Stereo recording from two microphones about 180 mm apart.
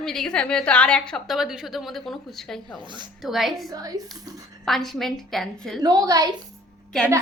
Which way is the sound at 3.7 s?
20° right (ahead or behind).